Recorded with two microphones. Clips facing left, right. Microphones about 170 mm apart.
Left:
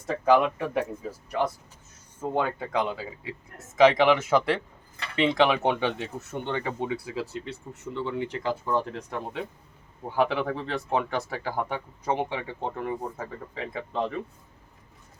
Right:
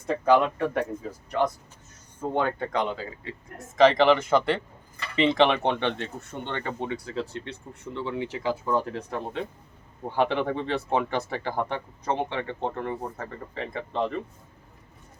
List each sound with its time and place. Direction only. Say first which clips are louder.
0.1 s speech: even; 5° left (ahead or behind)